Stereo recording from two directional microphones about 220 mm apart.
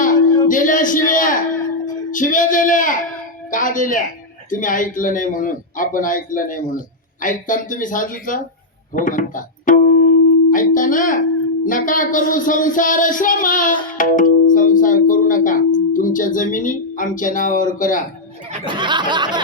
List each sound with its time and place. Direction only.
0.0 s speech: 35° left (ahead or behind)
2.0 s child singing: 35° left (ahead or behind)
9.0 s music: 35° left (ahead or behind)
10.5 s child singing: 35° left (ahead or behind)
18.6 s speech: 20° right (ahead or behind)